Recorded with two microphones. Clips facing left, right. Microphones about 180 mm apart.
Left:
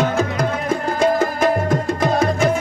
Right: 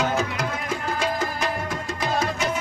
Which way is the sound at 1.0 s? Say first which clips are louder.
Left 11 dB; 50° left (ahead or behind).